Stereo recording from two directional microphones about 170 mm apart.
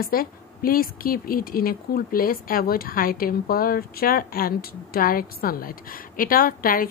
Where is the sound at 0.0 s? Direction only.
60° left (ahead or behind).